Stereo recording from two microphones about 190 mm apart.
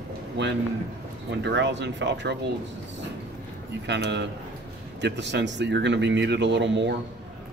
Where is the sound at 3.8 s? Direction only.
65° right (ahead or behind).